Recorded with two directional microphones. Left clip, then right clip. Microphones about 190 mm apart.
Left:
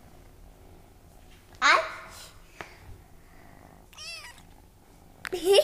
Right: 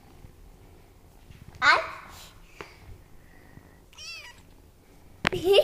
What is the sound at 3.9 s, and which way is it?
Cat, 20° left (ahead or behind).